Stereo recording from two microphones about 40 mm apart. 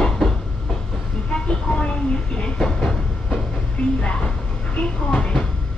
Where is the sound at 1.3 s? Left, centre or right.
Left.